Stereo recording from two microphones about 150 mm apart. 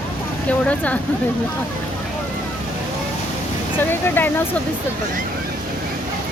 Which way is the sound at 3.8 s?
15° left (ahead or behind).